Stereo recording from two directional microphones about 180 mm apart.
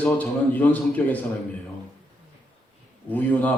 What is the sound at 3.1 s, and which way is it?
Speech, 10° left (ahead or behind).